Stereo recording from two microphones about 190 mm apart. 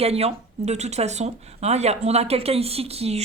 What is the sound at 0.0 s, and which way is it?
Speech, 35° right (ahead or behind).